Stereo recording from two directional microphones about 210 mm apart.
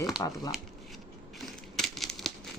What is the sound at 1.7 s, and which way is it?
Crumpling, centre (ahead or behind).